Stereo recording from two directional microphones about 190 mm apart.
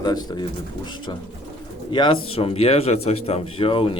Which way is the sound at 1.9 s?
25° left (ahead or behind).